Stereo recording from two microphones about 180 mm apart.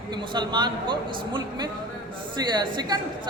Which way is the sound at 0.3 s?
25° right (ahead or behind).